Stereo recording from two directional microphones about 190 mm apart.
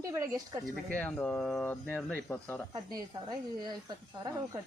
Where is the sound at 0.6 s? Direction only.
10° left (ahead or behind).